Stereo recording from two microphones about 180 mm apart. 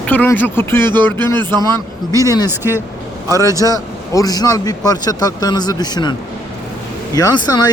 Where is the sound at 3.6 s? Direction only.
20° left (ahead or behind).